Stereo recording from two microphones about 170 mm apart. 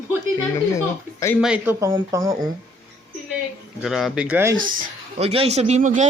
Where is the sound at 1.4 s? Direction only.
10° right (ahead or behind).